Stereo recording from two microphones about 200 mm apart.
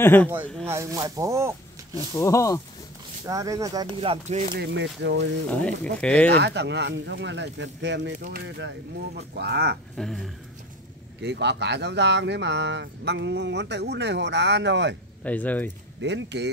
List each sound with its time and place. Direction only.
0.0 s speech: 10° left (ahead or behind)
0.7 s speech: 15° right (ahead or behind)
2.0 s speech: 15° left (ahead or behind)
3.3 s speech: 15° right (ahead or behind)
4.6 s speech: 60° right (ahead or behind)
5.5 s speech: 5° left (ahead or behind)
6.3 s speech: 60° right (ahead or behind)
8.2 s speech: 50° right (ahead or behind)
9.9 s speech: centre (ahead or behind)
11.1 s speech: 60° right (ahead or behind)
15.2 s speech: 10° left (ahead or behind)
16.0 s speech: 60° right (ahead or behind)